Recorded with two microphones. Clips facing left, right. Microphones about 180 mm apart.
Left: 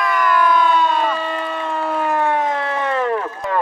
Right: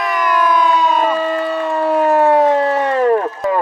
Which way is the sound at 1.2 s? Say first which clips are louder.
Right 6 dB; 40° right (ahead or behind).